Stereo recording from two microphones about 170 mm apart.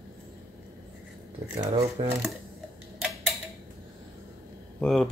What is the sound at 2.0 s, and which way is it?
Speech, 35° right (ahead or behind).